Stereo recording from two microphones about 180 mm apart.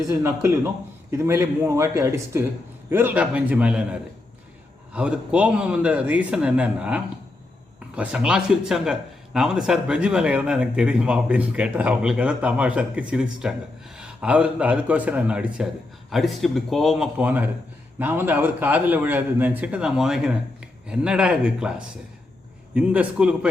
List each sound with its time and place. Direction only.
0.1 s a man's voice: 15° right (ahead or behind)
4.9 s a man's voice: 5° right (ahead or behind)